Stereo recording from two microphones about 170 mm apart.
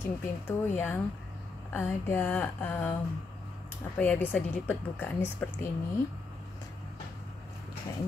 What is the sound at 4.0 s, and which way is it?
A woman's voice, 10° left (ahead or behind).